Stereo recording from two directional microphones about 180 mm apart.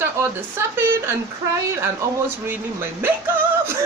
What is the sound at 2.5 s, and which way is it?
Speech, 10° right (ahead or behind).